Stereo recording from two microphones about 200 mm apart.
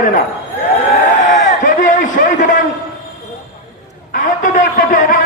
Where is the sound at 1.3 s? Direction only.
40° left (ahead or behind).